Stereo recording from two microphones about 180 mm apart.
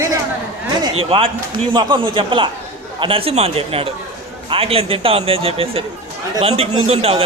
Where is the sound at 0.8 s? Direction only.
25° right (ahead or behind).